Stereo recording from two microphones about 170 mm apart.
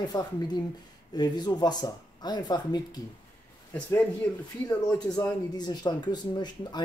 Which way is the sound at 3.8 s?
10° left (ahead or behind).